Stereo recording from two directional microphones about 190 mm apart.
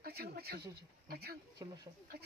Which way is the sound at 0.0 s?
55° right (ahead or behind).